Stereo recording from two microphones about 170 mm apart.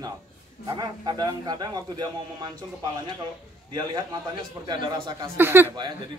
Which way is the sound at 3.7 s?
25° right (ahead or behind).